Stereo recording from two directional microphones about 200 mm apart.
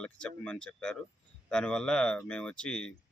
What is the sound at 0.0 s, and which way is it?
Speech, 5° left (ahead or behind).